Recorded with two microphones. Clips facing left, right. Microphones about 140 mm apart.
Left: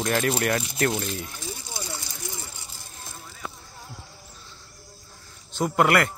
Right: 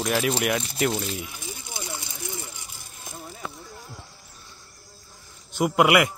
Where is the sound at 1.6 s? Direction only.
20° right (ahead or behind).